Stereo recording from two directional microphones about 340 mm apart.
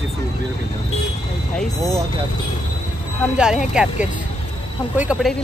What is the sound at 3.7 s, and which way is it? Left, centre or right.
Speech, centre.